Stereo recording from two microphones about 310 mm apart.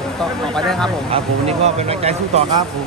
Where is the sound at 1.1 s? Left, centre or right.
Centre.